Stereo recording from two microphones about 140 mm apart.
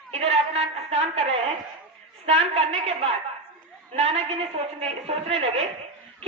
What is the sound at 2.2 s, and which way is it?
A woman's voice, 50° right (ahead or behind).